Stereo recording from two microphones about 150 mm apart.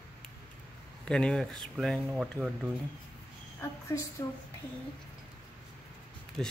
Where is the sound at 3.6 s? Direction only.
20° left (ahead or behind).